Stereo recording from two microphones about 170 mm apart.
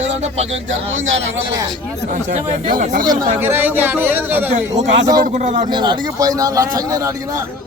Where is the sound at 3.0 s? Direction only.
25° right (ahead or behind).